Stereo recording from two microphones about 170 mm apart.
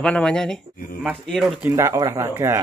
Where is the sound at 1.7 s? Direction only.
15° right (ahead or behind).